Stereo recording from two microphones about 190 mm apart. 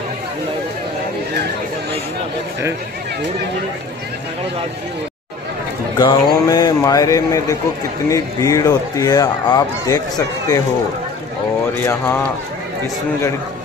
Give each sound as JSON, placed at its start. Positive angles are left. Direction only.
{"t": 5.9, "sound": "a man's voice", "side_deg": 25}
{"t": 11.7, "sound": "speech", "side_deg": 10}